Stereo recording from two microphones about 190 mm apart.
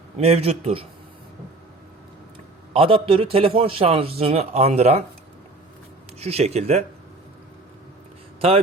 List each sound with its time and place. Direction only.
0.2 s a man's voice: 35° right (ahead or behind)
2.7 s a man's voice: 30° right (ahead or behind)
6.1 s a man's voice: 35° right (ahead or behind)